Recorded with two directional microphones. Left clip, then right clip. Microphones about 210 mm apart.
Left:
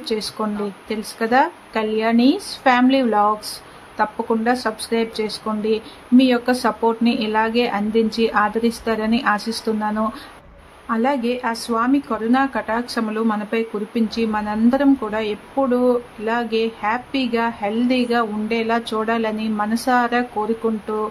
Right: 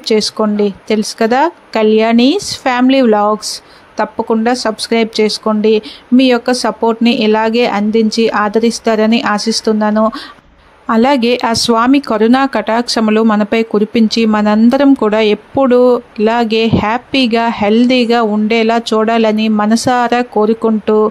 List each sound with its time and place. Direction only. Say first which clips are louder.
0.0 s speech: right 11 dB; 35° right (ahead or behind)
10.9 s speech: right 10 dB; 40° right (ahead or behind)